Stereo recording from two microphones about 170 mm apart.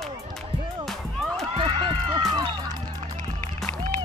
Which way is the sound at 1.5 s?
35° right (ahead or behind).